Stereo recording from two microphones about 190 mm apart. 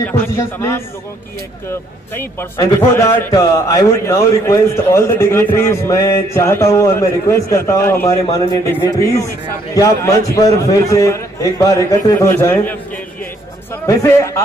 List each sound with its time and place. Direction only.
0.1 s a man's voice: 15° left (ahead or behind)
13.8 s a man's voice: 15° left (ahead or behind)